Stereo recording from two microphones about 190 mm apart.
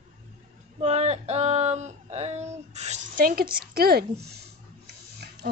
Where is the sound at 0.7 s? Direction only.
35° right (ahead or behind); by 4.4 s 55° right (ahead or behind).